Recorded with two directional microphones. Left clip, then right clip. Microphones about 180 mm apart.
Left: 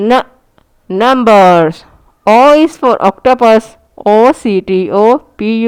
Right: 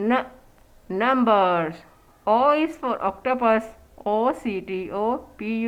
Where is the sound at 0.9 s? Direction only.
50° left (ahead or behind).